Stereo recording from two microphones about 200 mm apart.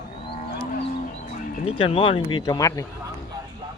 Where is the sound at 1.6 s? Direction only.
25° left (ahead or behind).